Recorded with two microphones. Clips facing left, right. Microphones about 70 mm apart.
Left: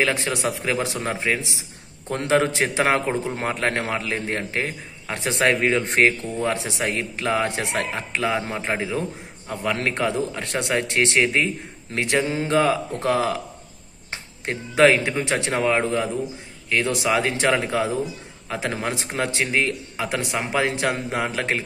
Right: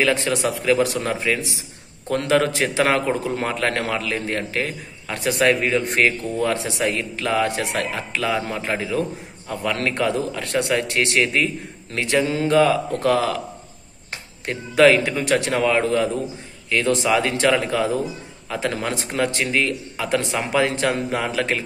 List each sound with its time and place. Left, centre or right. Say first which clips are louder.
0.0 s a man's voice: right 3 dB; left